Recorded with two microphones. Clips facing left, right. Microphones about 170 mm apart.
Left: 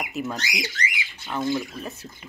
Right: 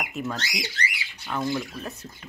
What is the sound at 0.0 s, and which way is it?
Speech, 5° left (ahead or behind).